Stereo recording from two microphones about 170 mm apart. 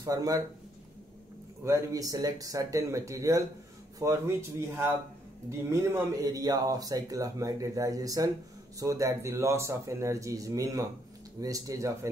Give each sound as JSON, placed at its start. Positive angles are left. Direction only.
{"t": 0.0, "sound": "speech", "side_deg": -20}
{"t": 1.6, "sound": "speech", "side_deg": -15}